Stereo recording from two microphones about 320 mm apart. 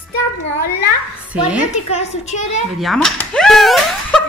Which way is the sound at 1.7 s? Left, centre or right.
Left.